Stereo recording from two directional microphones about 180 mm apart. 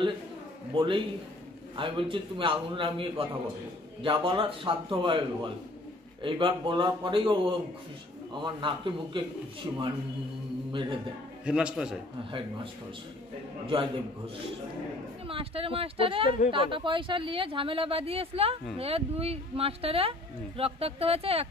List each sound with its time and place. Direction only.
0.7 s speech: 30° right (ahead or behind)
8.4 s speech: 25° right (ahead or behind)
10.7 s speech: 30° right (ahead or behind)
11.4 s a man's voice: 5° right (ahead or behind)
13.7 s speech: 30° right (ahead or behind)